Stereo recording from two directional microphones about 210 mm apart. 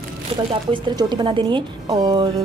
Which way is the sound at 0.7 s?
20° right (ahead or behind).